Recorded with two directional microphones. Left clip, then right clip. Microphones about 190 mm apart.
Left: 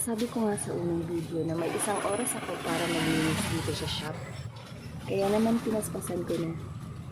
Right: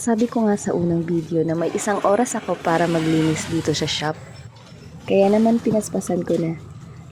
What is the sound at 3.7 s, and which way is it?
Speech, 45° right (ahead or behind).